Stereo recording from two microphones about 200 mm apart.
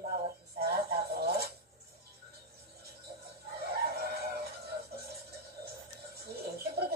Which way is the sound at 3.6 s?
55° right (ahead or behind).